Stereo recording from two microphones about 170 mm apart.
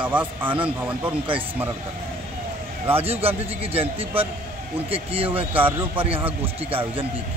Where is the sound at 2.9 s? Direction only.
35° right (ahead or behind).